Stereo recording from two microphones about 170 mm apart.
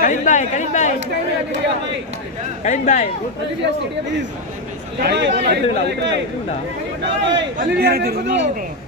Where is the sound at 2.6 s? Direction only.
45° left (ahead or behind).